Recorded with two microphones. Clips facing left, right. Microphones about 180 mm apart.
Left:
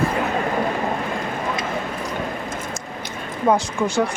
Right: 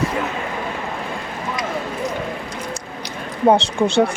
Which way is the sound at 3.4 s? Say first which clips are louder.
Right 4 dB; 30° right (ahead or behind).